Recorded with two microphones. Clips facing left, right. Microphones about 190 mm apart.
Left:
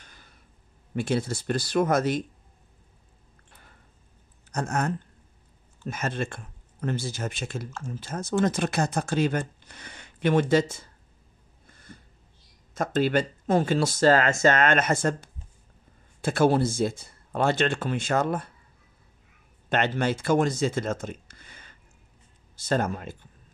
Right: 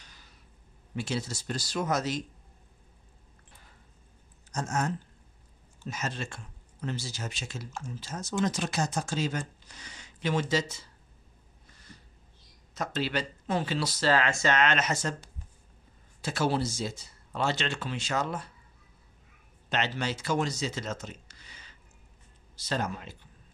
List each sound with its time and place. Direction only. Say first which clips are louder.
0.0 s a sound: left 3 dB; 55° left (ahead or behind)
0.9 s speech: left 7 dB; 55° left (ahead or behind)
4.5 s speech: left 3 dB; 60° left (ahead or behind)
11.6 s a sound: left 5 dB; 55° left (ahead or behind)
12.7 s speech: left 8 dB; 50° left (ahead or behind)
19.7 s speech: left 6 dB; 55° left (ahead or behind)